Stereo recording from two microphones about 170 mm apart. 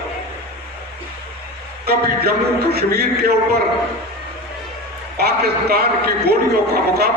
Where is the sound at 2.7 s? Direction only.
70° right (ahead or behind).